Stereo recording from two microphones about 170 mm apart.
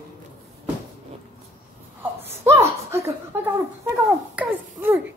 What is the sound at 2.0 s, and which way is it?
Chuckle, 15° right (ahead or behind).